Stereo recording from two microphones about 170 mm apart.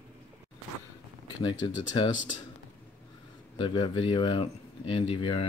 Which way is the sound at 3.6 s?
25° left (ahead or behind).